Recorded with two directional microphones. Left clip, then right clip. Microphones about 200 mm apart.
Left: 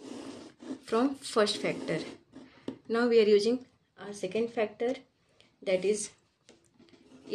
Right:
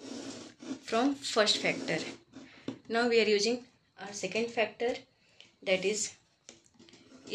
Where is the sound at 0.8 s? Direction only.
55° left (ahead or behind).